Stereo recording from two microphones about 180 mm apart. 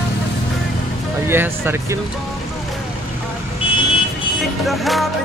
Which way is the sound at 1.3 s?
15° right (ahead or behind).